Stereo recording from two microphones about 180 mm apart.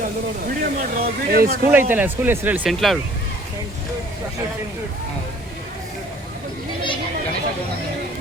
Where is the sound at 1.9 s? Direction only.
10° right (ahead or behind).